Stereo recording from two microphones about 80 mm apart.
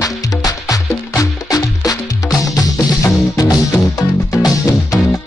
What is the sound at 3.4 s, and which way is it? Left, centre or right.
Music, left.